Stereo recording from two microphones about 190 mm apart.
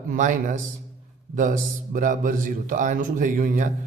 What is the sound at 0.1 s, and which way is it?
A man's voice, 45° right (ahead or behind).